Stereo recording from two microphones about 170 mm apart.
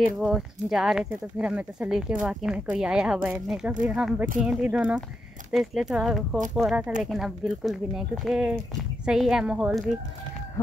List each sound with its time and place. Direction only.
0.2 s speech: 5° right (ahead or behind)